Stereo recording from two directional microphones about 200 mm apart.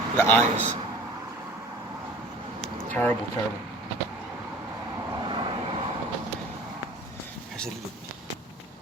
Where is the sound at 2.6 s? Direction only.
5° left (ahead or behind).